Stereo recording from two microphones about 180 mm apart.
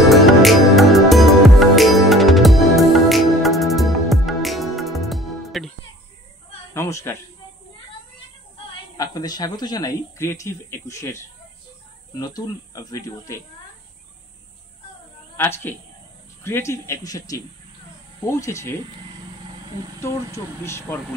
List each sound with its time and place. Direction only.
0.1 s music: centre (ahead or behind)
6.7 s a sound: 15° left (ahead or behind)
8.9 s speech: 20° left (ahead or behind)
15.3 s a woman's voice: 10° left (ahead or behind)
20.0 s speech: 15° left (ahead or behind)